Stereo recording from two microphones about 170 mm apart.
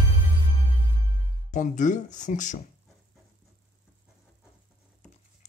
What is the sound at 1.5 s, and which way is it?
Speech, 50° left (ahead or behind).